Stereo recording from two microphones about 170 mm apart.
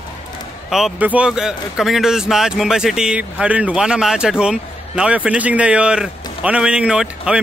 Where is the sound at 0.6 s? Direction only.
Centre (ahead or behind).